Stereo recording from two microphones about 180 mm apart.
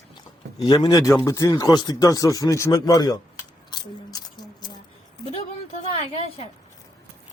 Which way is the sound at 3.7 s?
25° left (ahead or behind).